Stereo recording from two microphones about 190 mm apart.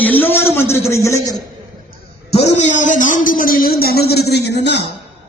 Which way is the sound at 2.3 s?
35° left (ahead or behind).